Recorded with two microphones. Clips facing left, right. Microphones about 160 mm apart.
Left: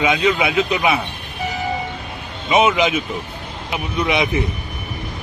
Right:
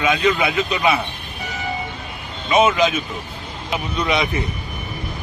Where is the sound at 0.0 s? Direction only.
20° left (ahead or behind).